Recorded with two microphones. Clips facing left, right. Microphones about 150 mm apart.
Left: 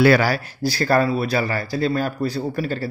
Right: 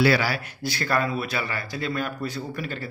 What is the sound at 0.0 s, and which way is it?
A man's voice, 45° left (ahead or behind).